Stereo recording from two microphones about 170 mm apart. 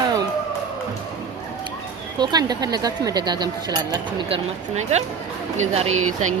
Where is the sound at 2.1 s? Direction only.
25° right (ahead or behind).